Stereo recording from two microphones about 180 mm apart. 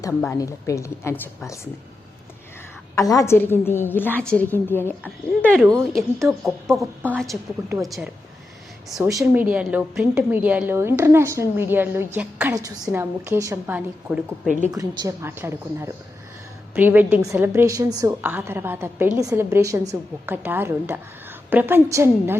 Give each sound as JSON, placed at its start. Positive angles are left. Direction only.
{"t": 0.0, "sound": "a woman's voice", "side_deg": 15}
{"t": 2.9, "sound": "a woman's voice", "side_deg": 20}
{"t": 9.0, "sound": "a woman's voice", "side_deg": -15}
{"t": 14.7, "sound": "a woman's voice", "side_deg": -20}